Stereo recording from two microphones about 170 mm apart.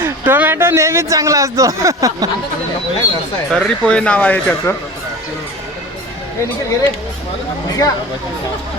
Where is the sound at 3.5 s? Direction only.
5° left (ahead or behind).